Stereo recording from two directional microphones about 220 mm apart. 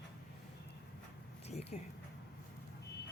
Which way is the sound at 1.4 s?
30° left (ahead or behind).